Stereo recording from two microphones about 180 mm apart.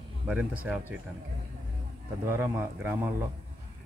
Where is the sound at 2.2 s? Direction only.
15° right (ahead or behind).